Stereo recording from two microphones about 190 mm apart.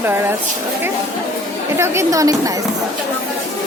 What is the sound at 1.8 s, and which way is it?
Speech, 15° right (ahead or behind).